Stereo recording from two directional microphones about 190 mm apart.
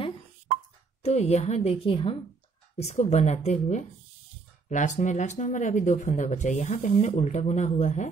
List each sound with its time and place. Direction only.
1.0 s speech: 35° left (ahead or behind)